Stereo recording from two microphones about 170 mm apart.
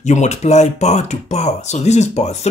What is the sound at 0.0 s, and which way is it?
Speech, 45° left (ahead or behind).